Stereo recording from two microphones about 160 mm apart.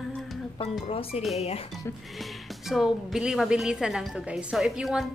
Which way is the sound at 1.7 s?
Centre (ahead or behind).